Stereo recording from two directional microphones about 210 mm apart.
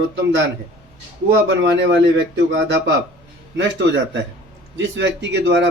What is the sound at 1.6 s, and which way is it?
Speech, 60° right (ahead or behind).